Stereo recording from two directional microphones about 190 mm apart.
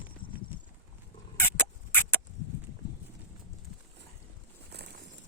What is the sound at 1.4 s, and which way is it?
Rodents, 10° left (ahead or behind).